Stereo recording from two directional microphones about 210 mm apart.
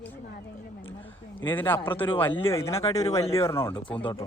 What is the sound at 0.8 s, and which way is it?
Speech, 10° left (ahead or behind).